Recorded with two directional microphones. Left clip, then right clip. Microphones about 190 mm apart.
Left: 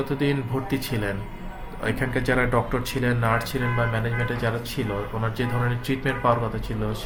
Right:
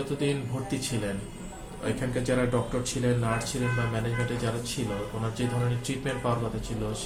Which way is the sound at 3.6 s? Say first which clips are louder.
Left 4 dB; 45° left (ahead or behind).